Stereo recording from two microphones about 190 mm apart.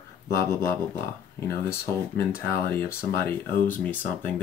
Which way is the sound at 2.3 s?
15° left (ahead or behind).